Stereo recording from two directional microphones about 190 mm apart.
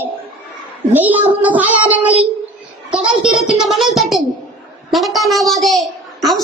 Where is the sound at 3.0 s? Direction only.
5° right (ahead or behind).